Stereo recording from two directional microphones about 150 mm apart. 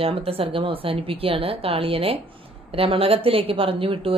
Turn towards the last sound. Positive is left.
turn(degrees=-35)  # may be behind; listen again after turning